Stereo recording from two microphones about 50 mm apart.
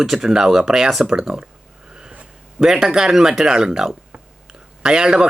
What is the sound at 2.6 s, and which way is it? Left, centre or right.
Speech, centre.